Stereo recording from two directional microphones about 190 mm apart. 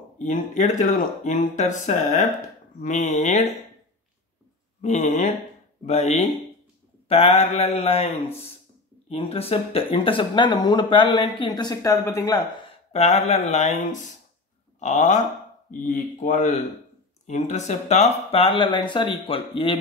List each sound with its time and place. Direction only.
0.2 s speech: 40° left (ahead or behind)
4.8 s speech: 35° left (ahead or behind); by 12.4 s 15° left (ahead or behind)
12.9 s speech: 35° left (ahead or behind)
14.8 s speech: 40° left (ahead or behind)